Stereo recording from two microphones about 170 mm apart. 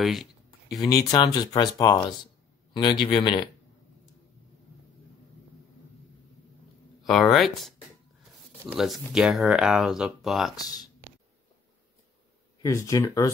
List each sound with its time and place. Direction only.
0.0 s a sound: centre (ahead or behind)
0.7 s speech: 20° left (ahead or behind)
7.1 s speech: centre (ahead or behind)
8.7 s speech: centre (ahead or behind)
10.5 s speech: 20° left (ahead or behind)
12.6 s speech: 20° left (ahead or behind)